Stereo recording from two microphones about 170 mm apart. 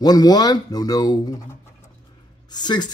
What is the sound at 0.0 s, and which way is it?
Speech, 25° left (ahead or behind).